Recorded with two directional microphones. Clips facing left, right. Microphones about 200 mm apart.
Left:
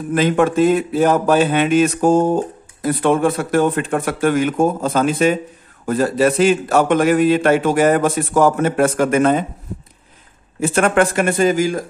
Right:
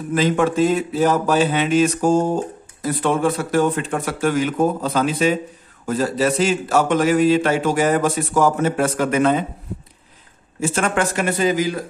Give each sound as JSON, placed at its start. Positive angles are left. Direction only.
{"t": 0.1, "sound": "a man's voice", "side_deg": 55}
{"t": 10.6, "sound": "speech", "side_deg": 55}